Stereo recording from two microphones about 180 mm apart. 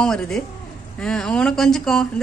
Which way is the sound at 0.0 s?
5° left (ahead or behind).